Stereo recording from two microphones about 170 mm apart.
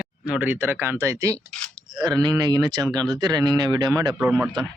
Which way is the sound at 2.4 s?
25° right (ahead or behind).